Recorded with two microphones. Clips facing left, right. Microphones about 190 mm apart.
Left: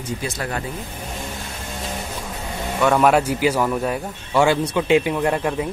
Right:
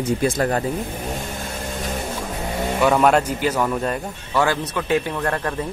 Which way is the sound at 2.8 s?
Centre (ahead or behind).